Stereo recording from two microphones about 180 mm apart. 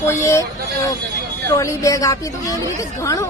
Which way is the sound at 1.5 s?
20° left (ahead or behind).